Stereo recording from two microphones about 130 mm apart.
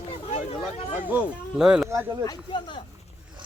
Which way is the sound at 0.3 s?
60° left (ahead or behind).